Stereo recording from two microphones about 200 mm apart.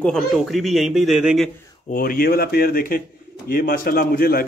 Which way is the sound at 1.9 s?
45° left (ahead or behind).